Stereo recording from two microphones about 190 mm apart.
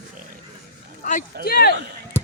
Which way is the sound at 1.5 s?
55° left (ahead or behind).